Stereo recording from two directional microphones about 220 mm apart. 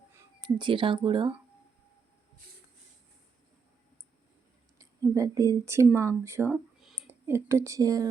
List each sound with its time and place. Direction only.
0.6 s speech: 20° right (ahead or behind)
4.8 s a woman's voice: 15° right (ahead or behind)
6.5 s speech: centre (ahead or behind)